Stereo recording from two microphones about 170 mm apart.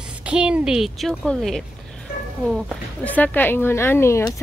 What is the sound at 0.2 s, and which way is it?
A woman's voice, 5° right (ahead or behind).